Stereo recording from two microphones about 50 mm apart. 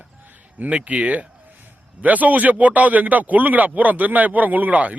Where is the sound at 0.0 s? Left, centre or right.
Right.